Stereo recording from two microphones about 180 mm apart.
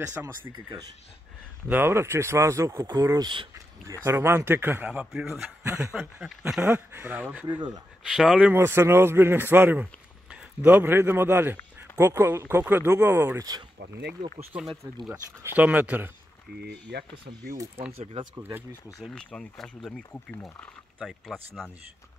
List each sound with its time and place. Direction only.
0.5 s speech: 20° right (ahead or behind)
1.7 s a man's voice: 10° right (ahead or behind)
7.4 s speech: 20° right (ahead or behind)
8.1 s a man's voice: centre (ahead or behind); by 13.7 s 20° right (ahead or behind)
14.4 s a man's voice: 10° right (ahead or behind)
16.6 s speech: 65° right (ahead or behind)
17.9 s speech: 30° right (ahead or behind)
18.3 s a man's voice: 10° right (ahead or behind)
18.9 s speech: 5° left (ahead or behind)